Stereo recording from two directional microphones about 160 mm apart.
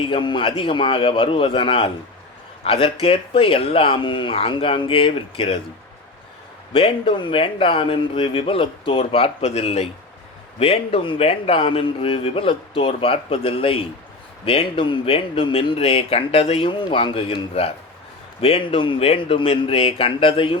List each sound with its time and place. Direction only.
0.0 s a man's voice: 30° left (ahead or behind)
6.7 s a man's voice: 35° left (ahead or behind)